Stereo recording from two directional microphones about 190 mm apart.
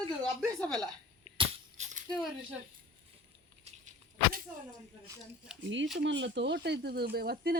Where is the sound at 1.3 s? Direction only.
40° right (ahead or behind).